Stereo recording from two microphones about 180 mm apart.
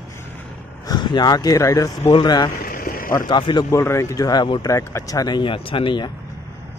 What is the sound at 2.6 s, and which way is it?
Vehicle, 50° left (ahead or behind).